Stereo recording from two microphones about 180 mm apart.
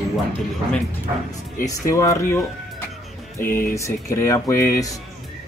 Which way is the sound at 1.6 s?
20° left (ahead or behind).